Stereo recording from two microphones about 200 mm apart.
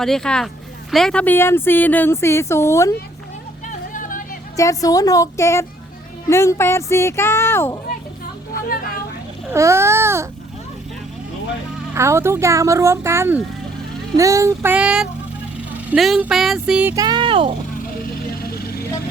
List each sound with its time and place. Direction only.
0.0 s speech: 5° left (ahead or behind)
3.7 s music: 40° left (ahead or behind)
4.5 s speech: 15° left (ahead or behind)
9.5 s speech: 15° right (ahead or behind)
11.9 s speech: 15° right (ahead or behind)
16.9 s speech: 20° right (ahead or behind)
18.4 s music: 50° left (ahead or behind)